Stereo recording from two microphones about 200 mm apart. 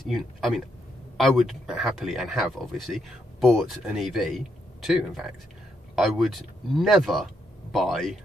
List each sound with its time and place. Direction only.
0.1 s speech: centre (ahead or behind)